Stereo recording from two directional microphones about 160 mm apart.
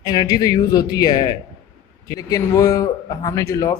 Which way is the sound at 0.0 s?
25° left (ahead or behind).